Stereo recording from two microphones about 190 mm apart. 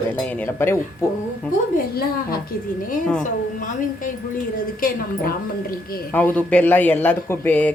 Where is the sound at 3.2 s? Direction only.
45° left (ahead or behind).